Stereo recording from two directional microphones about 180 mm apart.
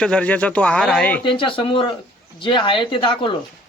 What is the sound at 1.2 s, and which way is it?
Speech, 30° left (ahead or behind).